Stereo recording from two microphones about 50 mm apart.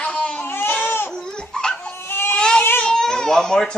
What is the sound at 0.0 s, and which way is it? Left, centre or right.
Baby cry, left.